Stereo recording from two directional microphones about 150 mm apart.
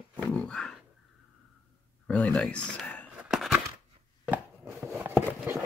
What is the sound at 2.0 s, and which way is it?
Speech, 10° left (ahead or behind).